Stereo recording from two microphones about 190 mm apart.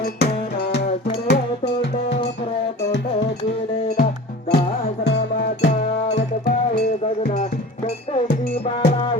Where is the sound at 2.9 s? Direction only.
70° left (ahead or behind).